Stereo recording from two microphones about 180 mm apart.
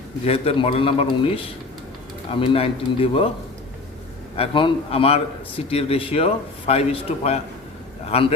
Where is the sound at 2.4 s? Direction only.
30° left (ahead or behind).